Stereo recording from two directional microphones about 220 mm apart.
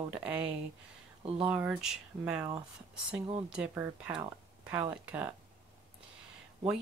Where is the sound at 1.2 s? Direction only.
25° right (ahead or behind).